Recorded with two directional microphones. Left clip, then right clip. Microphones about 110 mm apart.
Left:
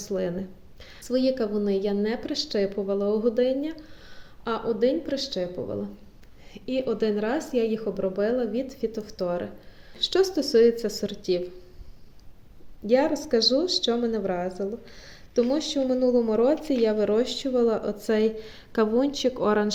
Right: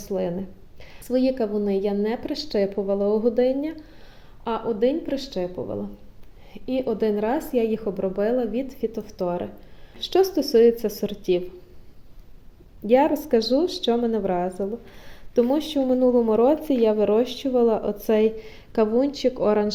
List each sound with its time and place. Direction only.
0.0 s a woman's voice: 20° right (ahead or behind); by 11.4 s 40° right (ahead or behind)
12.9 s a woman's voice: 55° right (ahead or behind); by 19.7 s 10° right (ahead or behind)